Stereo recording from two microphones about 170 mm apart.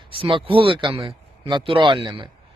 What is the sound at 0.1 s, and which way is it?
Speech, 30° right (ahead or behind).